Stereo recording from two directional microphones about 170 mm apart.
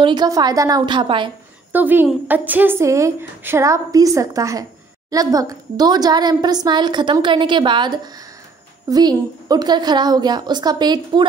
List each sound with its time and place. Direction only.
0.0 s a woman's voice: 25° right (ahead or behind)
1.7 s a woman's voice: 10° right (ahead or behind)